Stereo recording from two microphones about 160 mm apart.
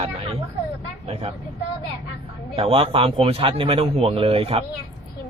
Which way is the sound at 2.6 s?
35° right (ahead or behind).